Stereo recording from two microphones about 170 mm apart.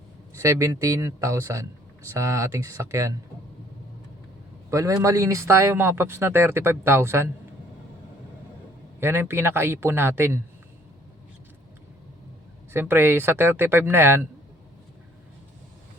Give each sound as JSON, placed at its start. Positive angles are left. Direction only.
{"t": 0.3, "sound": "speech", "side_deg": -15}
{"t": 4.7, "sound": "speech", "side_deg": -20}
{"t": 9.0, "sound": "speech", "side_deg": -15}
{"t": 12.7, "sound": "speech", "side_deg": -15}